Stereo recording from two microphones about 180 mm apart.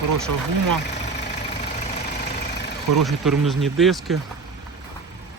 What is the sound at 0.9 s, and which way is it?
Vehicle, 40° left (ahead or behind).